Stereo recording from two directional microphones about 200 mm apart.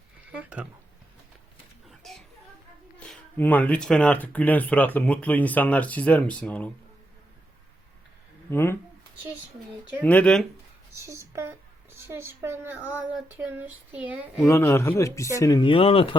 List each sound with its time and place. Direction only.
0.3 s speech: 5° right (ahead or behind)
1.9 s children playing: centre (ahead or behind)
3.0 s speech: 5° left (ahead or behind)
8.4 s speech: 10° left (ahead or behind)
10.0 s speech: 5° left (ahead or behind)
10.9 s speech: 15° right (ahead or behind)
14.4 s speech: 15° left (ahead or behind); by 16.1 s 30° left (ahead or behind)